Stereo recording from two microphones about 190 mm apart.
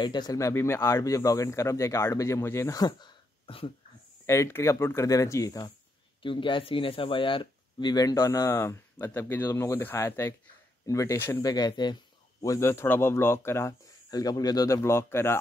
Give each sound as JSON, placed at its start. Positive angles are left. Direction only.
{"t": 0.0, "sound": "speech", "side_deg": 20}
{"t": 4.3, "sound": "speech", "side_deg": 15}